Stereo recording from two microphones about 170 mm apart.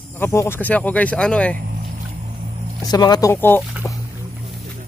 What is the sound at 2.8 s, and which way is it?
Speech, 25° left (ahead or behind).